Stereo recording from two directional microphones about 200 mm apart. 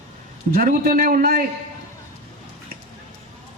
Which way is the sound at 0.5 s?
45° right (ahead or behind).